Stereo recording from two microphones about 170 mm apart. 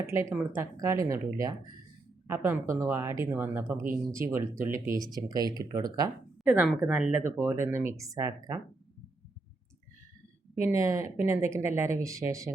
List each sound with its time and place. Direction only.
0.0 s speech: 15° right (ahead or behind)
6.4 s speech: 5° right (ahead or behind); by 8.5 s 20° right (ahead or behind)
10.7 s speech: 20° right (ahead or behind)